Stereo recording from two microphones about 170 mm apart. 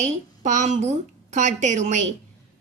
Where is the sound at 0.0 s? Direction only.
45° right (ahead or behind).